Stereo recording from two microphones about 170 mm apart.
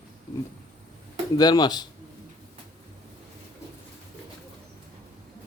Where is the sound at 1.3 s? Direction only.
25° left (ahead or behind).